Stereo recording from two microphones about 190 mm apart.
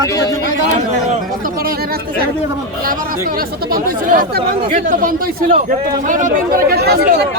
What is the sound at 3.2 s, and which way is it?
Speech, 50° right (ahead or behind).